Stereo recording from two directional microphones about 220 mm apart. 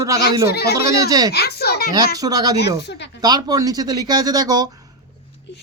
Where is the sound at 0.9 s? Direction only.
15° right (ahead or behind).